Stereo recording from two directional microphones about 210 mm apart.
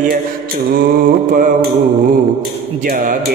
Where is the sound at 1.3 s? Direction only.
40° right (ahead or behind).